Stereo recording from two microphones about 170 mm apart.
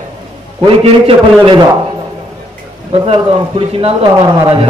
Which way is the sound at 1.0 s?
30° right (ahead or behind).